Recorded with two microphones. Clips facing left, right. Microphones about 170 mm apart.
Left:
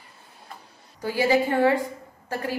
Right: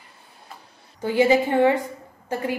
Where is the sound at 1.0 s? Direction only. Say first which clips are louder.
Right 3 dB; 20° right (ahead or behind).